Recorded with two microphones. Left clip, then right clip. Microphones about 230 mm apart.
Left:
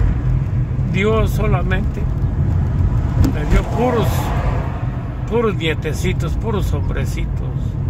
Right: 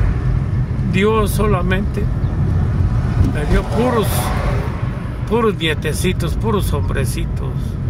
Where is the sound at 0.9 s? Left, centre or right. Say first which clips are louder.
Right 2 dB; right.